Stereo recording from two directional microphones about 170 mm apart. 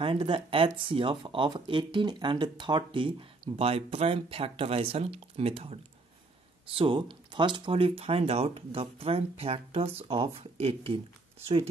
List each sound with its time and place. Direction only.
0.0 s speech: 30° right (ahead or behind)